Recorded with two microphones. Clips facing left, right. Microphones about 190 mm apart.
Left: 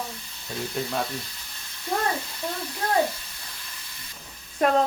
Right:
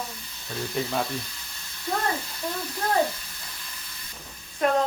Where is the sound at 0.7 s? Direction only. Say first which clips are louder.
Right 1 dB; centre (ahead or behind).